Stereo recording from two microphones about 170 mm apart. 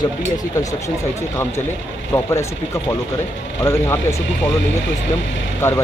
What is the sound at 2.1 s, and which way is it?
Speech, 20° left (ahead or behind).